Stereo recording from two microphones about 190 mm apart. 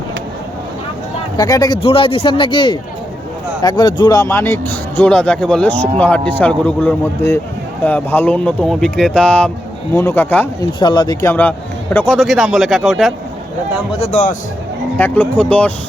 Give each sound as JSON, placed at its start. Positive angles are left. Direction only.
{"t": 1.4, "sound": "speech", "side_deg": 20}
{"t": 10.6, "sound": "speech", "side_deg": 25}
{"t": 14.0, "sound": "speech", "side_deg": 40}
{"t": 14.9, "sound": "speech", "side_deg": 10}